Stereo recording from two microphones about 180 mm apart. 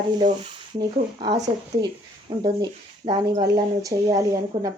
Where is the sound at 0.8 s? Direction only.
25° right (ahead or behind).